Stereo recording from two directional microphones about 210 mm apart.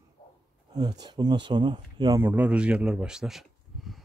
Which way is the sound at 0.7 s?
20° right (ahead or behind).